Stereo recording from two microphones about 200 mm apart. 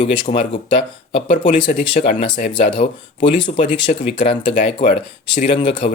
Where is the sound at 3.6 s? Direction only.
40° left (ahead or behind).